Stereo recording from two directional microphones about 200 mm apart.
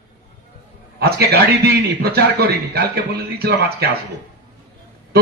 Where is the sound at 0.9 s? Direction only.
50° right (ahead or behind).